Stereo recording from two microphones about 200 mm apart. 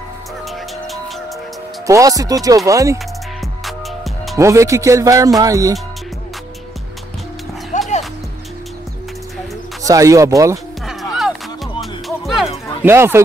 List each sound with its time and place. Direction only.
0.5 s music: centre (ahead or behind)
1.9 s speech: 15° right (ahead or behind)
3.3 s music: centre (ahead or behind)
4.4 s speech: 15° right (ahead or behind)
7.7 s music: 35° left (ahead or behind)
9.8 s speech: 15° right (ahead or behind)
10.9 s music: centre (ahead or behind)
12.8 s speech: 10° right (ahead or behind)